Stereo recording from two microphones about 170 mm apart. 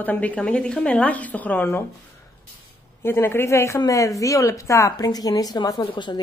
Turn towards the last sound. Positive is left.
turn(degrees=25)  # may be behind; listen again after turning